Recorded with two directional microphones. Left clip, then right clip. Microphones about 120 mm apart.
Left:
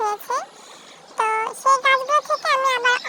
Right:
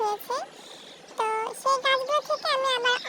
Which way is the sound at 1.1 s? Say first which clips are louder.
Left 6 dB; 5° right (ahead or behind).